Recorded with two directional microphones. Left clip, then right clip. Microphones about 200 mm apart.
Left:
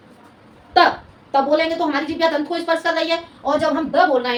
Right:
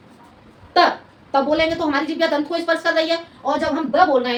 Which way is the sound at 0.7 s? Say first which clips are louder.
Left 1 dB; 10° right (ahead or behind).